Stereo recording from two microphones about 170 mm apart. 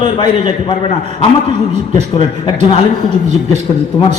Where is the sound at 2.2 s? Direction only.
30° left (ahead or behind).